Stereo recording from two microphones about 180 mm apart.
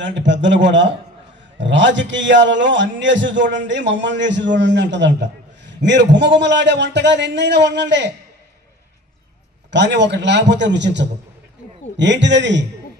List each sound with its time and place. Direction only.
0.0 s a man's voice: 85° right
9.7 s a man's voice: 75° right (ahead or behind)